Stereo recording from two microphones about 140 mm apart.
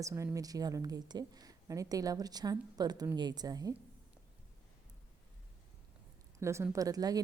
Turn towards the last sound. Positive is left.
turn(degrees=-25)  # may be behind; listen again after turning